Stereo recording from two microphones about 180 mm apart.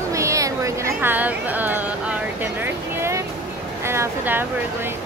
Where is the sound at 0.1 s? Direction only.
15° right (ahead or behind).